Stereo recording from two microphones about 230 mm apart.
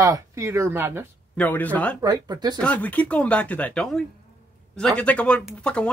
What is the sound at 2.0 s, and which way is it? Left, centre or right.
Speech, centre.